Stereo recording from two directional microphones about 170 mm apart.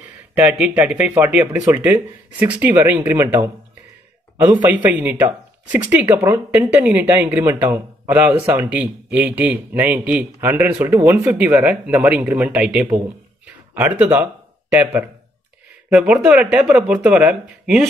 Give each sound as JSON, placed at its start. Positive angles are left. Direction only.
{"t": 0.3, "sound": "a man's voice", "side_deg": -10}
{"t": 1.5, "sound": "a man's voice", "side_deg": -20}
{"t": 4.4, "sound": "a man's voice", "side_deg": -10}